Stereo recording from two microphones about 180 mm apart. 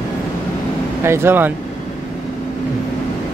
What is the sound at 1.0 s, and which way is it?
Speech, 15° right (ahead or behind).